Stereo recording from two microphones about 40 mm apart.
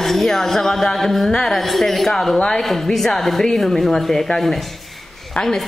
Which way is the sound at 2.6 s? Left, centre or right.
Centre.